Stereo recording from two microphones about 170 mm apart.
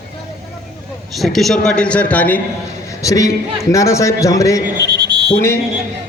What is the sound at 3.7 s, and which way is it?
Speech, 20° left (ahead or behind).